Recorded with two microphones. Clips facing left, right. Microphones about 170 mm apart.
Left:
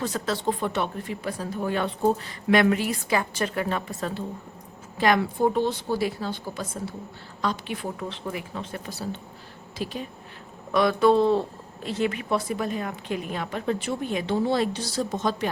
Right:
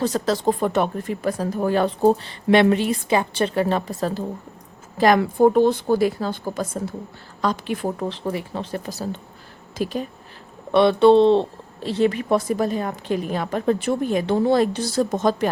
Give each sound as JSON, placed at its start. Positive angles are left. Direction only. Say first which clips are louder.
{"t": 0.0, "sound": "speech", "louder": "right 6 dB", "side_deg": -40}
{"t": 10.7, "sound": "speech", "louder": "right 6 dB", "side_deg": -30}